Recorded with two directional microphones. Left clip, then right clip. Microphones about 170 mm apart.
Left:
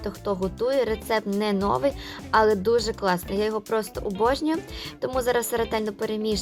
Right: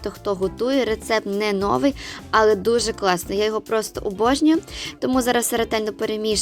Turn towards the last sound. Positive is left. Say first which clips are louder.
# right 4 dB
turn(degrees=-30)  # may be behind; listen again after turning